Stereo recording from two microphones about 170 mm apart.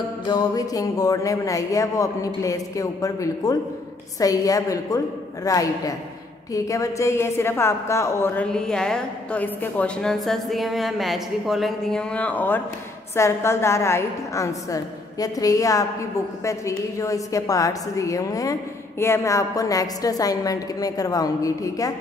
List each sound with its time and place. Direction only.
0.3 s a woman's voice: 20° left (ahead or behind)